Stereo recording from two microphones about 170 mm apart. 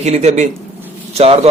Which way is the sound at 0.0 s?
40° right (ahead or behind).